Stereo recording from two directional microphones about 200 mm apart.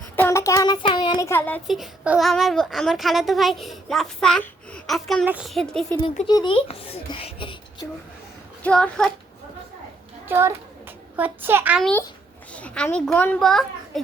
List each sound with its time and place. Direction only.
0.2 s child singing: 15° left (ahead or behind)
6.0 s speech: 25° left (ahead or behind)
8.6 s child singing: 5° left (ahead or behind)
10.2 s a child's voice: 10° right (ahead or behind)
12.5 s child singing: 5° left (ahead or behind)